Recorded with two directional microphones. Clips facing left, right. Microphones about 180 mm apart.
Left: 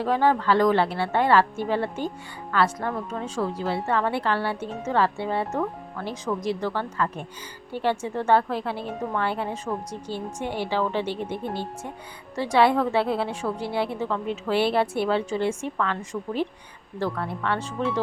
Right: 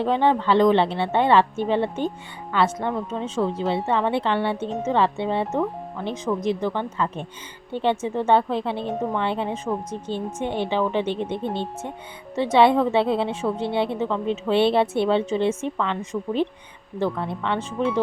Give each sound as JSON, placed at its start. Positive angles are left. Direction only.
{"t": 0.0, "sound": "a woman's voice", "side_deg": -25}